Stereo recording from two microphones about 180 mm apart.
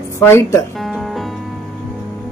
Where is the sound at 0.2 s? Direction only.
15° left (ahead or behind).